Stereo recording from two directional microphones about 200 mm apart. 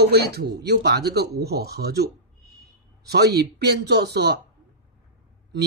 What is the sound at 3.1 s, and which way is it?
Speech, 55° right (ahead or behind).